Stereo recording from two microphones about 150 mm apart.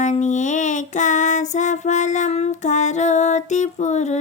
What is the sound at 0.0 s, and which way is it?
Child singing, 55° left (ahead or behind).